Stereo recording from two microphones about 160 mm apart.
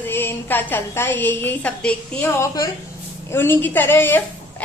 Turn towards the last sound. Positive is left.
turn(degrees=15)  # may be behind; listen again after turning